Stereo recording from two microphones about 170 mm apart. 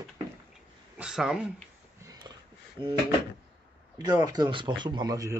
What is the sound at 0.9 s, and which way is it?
Speech, 5° right (ahead or behind).